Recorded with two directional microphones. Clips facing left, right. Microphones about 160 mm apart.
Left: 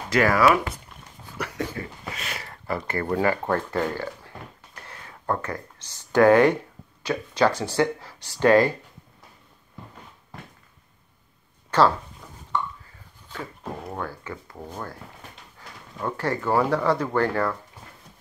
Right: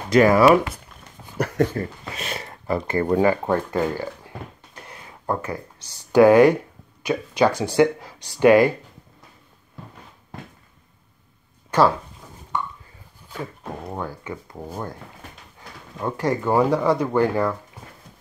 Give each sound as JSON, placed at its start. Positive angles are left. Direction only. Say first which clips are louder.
{"t": 0.1, "sound": "speech", "louder": "right 5 dB", "side_deg": -20}
{"t": 1.4, "sound": "speech", "louder": "right 9 dB", "side_deg": -45}
{"t": 2.1, "sound": "speech", "louder": "right 4 dB", "side_deg": -25}
{"t": 11.7, "sound": "speech", "louder": "right 2 dB", "side_deg": -15}
{"t": 13.3, "sound": "speech", "louder": "right 2 dB", "side_deg": -15}
{"t": 16.0, "sound": "speech", "louder": "right 4 dB", "side_deg": -15}